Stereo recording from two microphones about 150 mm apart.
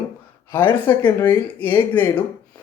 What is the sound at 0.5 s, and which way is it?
Speech, 10° left (ahead or behind).